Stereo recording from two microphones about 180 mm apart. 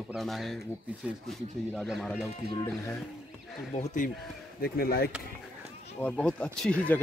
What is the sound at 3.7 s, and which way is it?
Speech, 45° left (ahead or behind).